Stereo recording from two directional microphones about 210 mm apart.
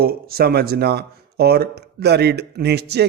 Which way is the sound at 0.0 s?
45° right (ahead or behind).